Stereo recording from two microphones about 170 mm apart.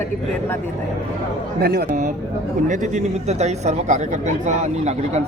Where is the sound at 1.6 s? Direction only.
65° right (ahead or behind).